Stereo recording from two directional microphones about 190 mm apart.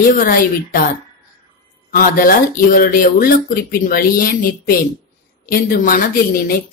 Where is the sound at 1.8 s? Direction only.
45° left (ahead or behind).